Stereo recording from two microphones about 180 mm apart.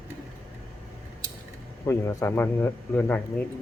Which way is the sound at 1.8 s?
15° left (ahead or behind).